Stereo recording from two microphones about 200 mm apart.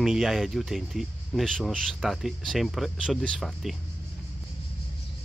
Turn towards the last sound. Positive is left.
turn(degrees=0)  # may be behind; listen again after turning